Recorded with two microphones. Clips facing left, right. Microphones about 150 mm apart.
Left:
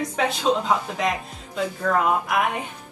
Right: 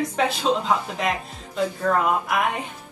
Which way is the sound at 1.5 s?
Centre (ahead or behind).